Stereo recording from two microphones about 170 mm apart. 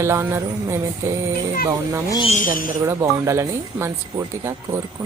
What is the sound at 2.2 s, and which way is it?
Speech, 45° left (ahead or behind).